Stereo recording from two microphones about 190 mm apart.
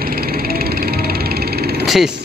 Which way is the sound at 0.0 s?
55° right (ahead or behind).